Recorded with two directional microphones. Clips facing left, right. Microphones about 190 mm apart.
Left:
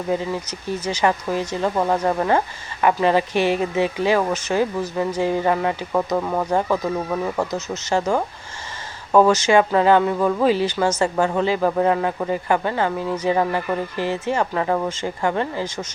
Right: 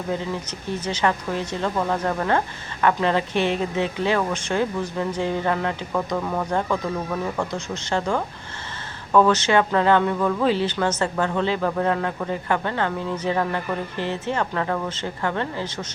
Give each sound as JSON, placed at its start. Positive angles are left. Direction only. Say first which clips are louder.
{"t": 0.1, "sound": "speech", "louder": "left 4 dB", "side_deg": 10}
{"t": 10.2, "sound": "speech", "louder": "left 3 dB", "side_deg": 20}
{"t": 10.4, "sound": "speech", "louder": "left 3 dB", "side_deg": 10}